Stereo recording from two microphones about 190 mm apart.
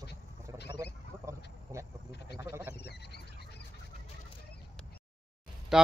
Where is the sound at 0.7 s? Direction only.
15° right (ahead or behind).